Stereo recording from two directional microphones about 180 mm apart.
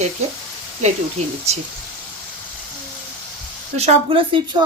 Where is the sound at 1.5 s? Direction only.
35° right (ahead or behind).